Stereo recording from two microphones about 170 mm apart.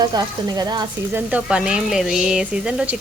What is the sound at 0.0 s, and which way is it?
Speech, 25° right (ahead or behind).